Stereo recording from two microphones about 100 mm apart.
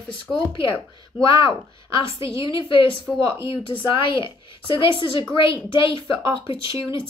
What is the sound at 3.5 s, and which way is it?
Speech, 55° left (ahead or behind).